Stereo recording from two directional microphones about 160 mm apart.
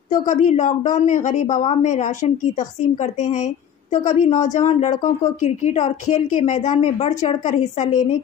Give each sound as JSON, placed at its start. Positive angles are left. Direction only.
{"t": 0.1, "sound": "a woman's voice", "side_deg": 50}